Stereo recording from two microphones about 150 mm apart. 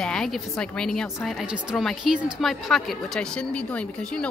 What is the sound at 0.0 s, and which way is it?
A woman's voice, 5° left (ahead or behind).